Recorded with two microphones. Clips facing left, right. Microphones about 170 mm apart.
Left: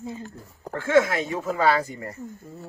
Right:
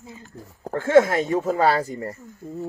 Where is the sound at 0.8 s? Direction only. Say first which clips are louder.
Right 4 dB; 45° right (ahead or behind).